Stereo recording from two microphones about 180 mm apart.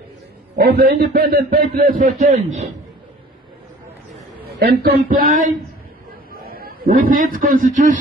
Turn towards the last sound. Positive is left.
turn(degrees=-45)  # may be behind; listen again after turning